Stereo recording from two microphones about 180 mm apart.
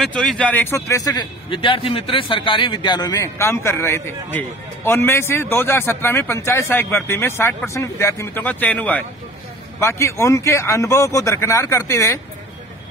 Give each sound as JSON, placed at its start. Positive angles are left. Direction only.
{"t": 0.0, "sound": "a man's voice", "side_deg": 0}